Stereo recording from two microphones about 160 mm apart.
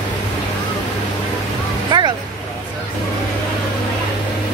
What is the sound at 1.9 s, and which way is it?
Vehicle, 25° right (ahead or behind).